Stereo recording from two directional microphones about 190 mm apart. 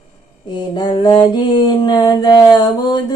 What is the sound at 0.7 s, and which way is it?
Mantra, 25° left (ahead or behind).